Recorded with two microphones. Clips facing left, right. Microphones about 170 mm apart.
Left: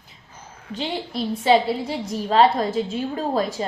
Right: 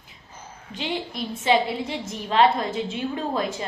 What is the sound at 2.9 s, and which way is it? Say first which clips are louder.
Speech: left 3 dB; 35° left (ahead or behind).